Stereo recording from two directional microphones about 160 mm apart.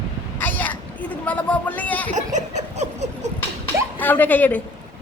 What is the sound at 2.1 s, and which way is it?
Laughter, 50° right (ahead or behind).